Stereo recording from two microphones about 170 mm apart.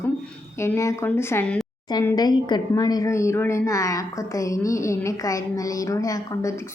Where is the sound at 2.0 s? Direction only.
20° left (ahead or behind).